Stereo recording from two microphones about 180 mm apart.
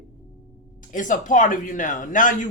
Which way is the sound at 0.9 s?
45° left (ahead or behind).